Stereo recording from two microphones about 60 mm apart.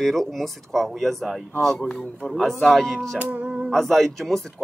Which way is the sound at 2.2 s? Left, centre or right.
Centre.